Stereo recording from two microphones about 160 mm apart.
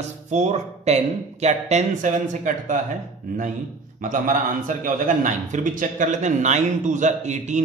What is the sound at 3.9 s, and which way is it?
A man's voice, 55° right (ahead or behind).